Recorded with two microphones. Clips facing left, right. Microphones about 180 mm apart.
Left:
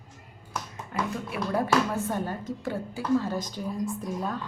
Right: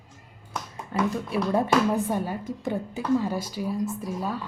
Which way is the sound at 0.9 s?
25° right (ahead or behind).